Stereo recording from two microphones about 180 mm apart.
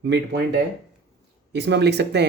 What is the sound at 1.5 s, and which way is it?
Speech, 70° right (ahead or behind).